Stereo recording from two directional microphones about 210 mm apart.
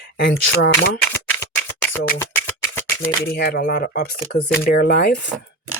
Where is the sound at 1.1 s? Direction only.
10° left (ahead or behind).